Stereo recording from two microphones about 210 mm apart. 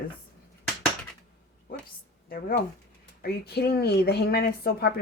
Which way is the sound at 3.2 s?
50° left (ahead or behind).